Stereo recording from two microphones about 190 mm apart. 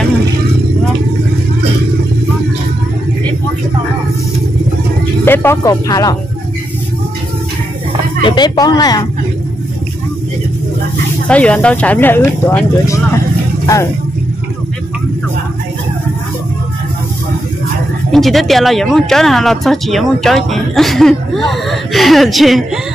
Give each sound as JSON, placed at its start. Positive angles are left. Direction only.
{"t": 5.2, "sound": "speech", "side_deg": 10}
{"t": 8.2, "sound": "speech", "side_deg": 25}
{"t": 11.2, "sound": "speech", "side_deg": 5}
{"t": 18.1, "sound": "speech", "side_deg": 0}